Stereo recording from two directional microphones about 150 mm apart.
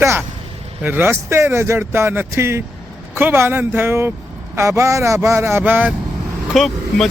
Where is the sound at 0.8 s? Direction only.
15° right (ahead or behind).